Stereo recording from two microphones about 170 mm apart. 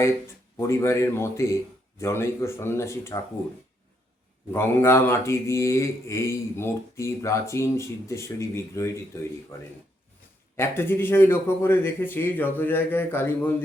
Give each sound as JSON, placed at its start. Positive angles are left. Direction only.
{"t": 0.7, "sound": "speech", "side_deg": 15}
{"t": 4.5, "sound": "speech", "side_deg": 15}